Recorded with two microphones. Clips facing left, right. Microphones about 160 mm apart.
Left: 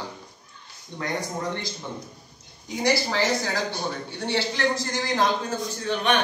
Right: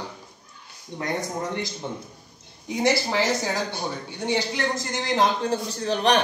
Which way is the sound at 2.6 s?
20° right (ahead or behind).